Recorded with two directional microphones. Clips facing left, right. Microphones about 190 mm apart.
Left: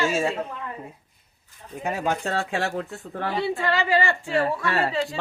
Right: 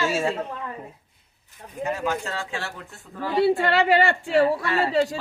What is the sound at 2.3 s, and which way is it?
Speech, 55° left (ahead or behind).